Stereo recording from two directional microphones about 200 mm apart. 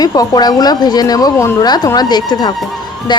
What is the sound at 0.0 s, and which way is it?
Speech, 20° left (ahead or behind).